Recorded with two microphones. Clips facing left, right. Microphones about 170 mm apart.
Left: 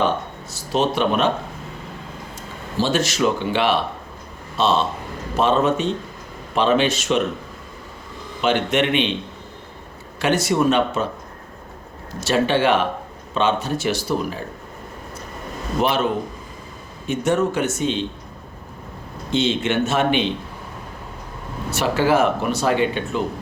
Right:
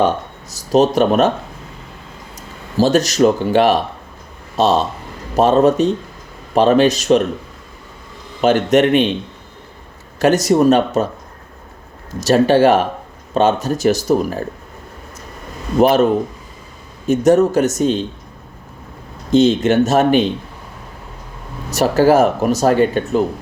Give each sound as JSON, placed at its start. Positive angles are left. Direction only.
{"t": 0.5, "sound": "speech", "side_deg": -40}
{"t": 2.7, "sound": "speech", "side_deg": -40}
{"t": 8.4, "sound": "speech", "side_deg": -40}
{"t": 10.2, "sound": "speech", "side_deg": -40}
{"t": 12.2, "sound": "speech", "side_deg": -40}
{"t": 15.8, "sound": "speech", "side_deg": -40}
{"t": 17.1, "sound": "speech", "side_deg": -40}
{"t": 19.3, "sound": "speech", "side_deg": -40}
{"t": 21.7, "sound": "speech", "side_deg": -40}